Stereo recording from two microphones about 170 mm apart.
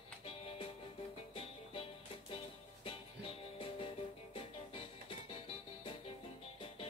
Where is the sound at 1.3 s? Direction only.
30° left (ahead or behind).